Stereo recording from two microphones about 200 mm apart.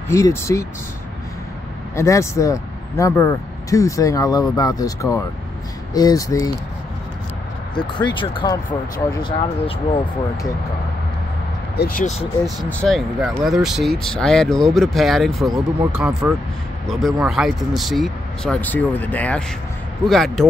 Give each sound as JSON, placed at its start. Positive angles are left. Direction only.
{"t": 0.1, "sound": "speech", "side_deg": 15}
{"t": 2.0, "sound": "speech", "side_deg": 15}
{"t": 7.8, "sound": "speech", "side_deg": 25}
{"t": 11.7, "sound": "speech", "side_deg": 50}
{"t": 12.6, "sound": "speech", "side_deg": 0}